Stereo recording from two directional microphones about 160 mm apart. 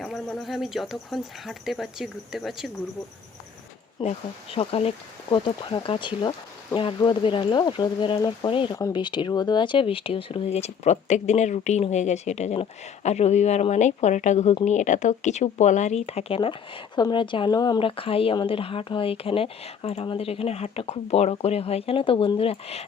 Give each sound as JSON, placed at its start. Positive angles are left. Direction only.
{"t": 0.0, "sound": "speech", "side_deg": 0}
{"t": 4.0, "sound": "speech", "side_deg": 30}